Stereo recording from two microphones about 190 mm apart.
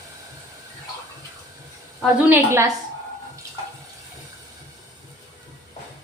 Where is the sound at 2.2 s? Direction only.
10° right (ahead or behind).